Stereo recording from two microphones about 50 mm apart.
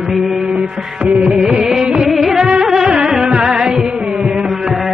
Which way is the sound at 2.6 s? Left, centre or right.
Centre.